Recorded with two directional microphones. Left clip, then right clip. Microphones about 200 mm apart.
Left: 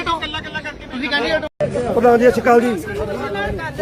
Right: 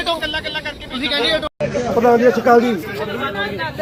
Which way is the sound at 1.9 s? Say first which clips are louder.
Left 1 dB; 10° left (ahead or behind).